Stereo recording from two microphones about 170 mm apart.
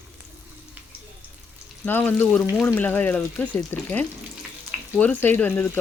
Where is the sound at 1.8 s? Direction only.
10° left (ahead or behind).